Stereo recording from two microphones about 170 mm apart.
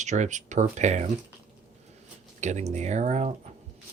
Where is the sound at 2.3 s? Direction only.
45° right (ahead or behind).